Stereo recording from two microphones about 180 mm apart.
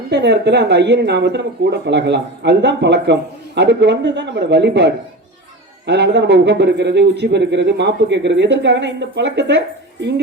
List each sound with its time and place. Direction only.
0.1 s speech: 70° right (ahead or behind)